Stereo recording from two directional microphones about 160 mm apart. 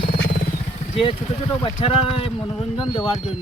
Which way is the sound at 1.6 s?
35° left (ahead or behind).